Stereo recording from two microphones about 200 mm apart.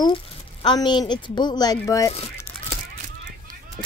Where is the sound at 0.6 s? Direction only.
20° left (ahead or behind).